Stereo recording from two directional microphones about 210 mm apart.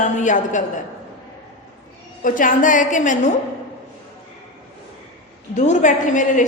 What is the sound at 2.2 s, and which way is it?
Speech, 40° left (ahead or behind).